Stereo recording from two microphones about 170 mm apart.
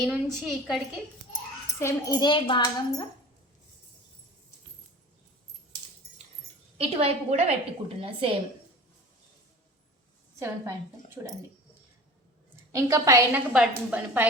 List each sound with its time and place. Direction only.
0.0 s a woman's voice: centre (ahead or behind)
1.8 s a child's voice: 20° left (ahead or behind)
6.7 s a woman's voice: 35° right (ahead or behind)
10.4 s a woman's voice: 15° right (ahead or behind)
12.7 s a woman's voice: 20° right (ahead or behind)
13.5 s a woman's voice: 5° right (ahead or behind)